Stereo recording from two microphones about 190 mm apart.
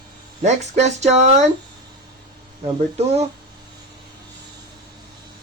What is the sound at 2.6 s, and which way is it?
Speech, 35° right (ahead or behind).